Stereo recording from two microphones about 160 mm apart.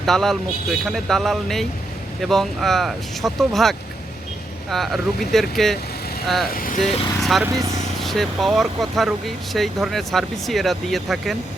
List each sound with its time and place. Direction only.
0.0 s speech: centre (ahead or behind)
6.5 s speech: 60° left (ahead or behind)
6.7 s speech: centre (ahead or behind)